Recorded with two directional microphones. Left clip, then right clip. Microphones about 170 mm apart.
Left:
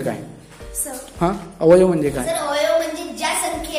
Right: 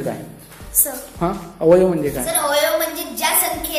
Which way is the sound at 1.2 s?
20° left (ahead or behind).